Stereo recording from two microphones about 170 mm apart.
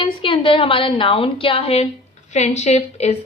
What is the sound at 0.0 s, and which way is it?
A woman's voice, 30° left (ahead or behind).